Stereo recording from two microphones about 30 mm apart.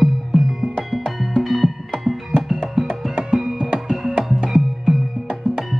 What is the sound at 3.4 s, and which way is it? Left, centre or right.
Music, centre.